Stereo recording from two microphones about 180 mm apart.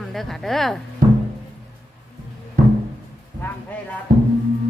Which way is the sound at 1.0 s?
50° right (ahead or behind).